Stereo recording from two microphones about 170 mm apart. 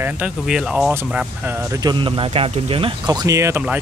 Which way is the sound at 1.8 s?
30° right (ahead or behind).